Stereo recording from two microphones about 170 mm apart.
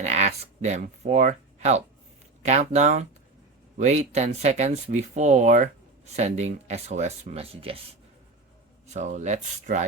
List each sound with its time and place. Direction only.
0.0 s speech: 40° right (ahead or behind)
8.9 s speech: 45° right (ahead or behind)